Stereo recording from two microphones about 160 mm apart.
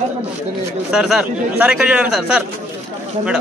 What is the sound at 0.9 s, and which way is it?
A man's voice, centre (ahead or behind).